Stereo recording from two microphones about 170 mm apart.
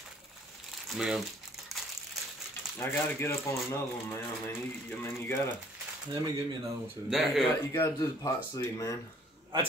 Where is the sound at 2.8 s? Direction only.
15° left (ahead or behind).